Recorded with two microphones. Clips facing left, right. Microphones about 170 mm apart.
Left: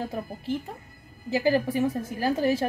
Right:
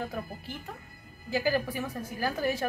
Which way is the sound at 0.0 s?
25° left (ahead or behind).